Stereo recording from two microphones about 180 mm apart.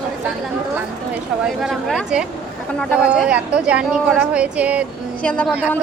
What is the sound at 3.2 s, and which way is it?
A woman's voice, 5° right (ahead or behind).